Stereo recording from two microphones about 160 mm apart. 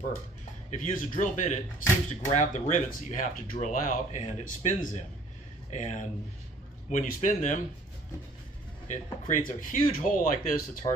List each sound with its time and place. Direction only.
0.7 s speech: 50° left (ahead or behind)
8.8 s speech: 50° left (ahead or behind)